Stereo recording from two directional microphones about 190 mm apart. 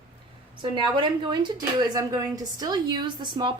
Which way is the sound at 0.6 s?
25° right (ahead or behind).